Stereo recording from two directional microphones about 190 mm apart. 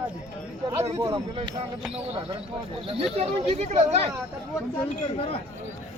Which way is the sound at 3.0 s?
35° right (ahead or behind).